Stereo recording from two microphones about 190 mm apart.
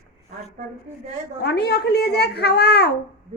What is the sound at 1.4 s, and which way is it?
A child's voice, 60° left (ahead or behind).